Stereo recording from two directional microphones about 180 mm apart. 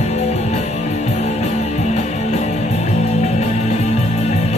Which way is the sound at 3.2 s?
35° left (ahead or behind).